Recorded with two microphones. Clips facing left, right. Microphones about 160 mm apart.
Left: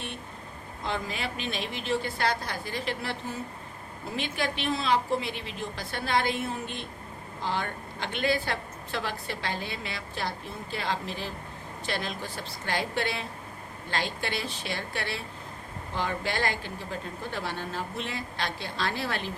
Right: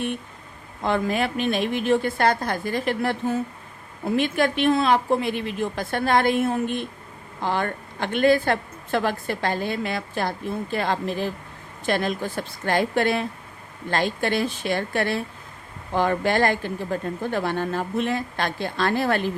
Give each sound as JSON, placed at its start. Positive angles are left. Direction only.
{"t": 0.9, "sound": "a woman's voice", "side_deg": -55}